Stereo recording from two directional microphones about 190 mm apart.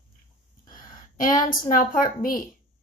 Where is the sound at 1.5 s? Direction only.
45° left (ahead or behind).